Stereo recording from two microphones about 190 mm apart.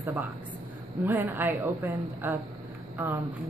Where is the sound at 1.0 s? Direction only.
10° right (ahead or behind).